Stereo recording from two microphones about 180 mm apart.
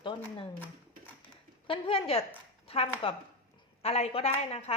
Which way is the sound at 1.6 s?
30° left (ahead or behind).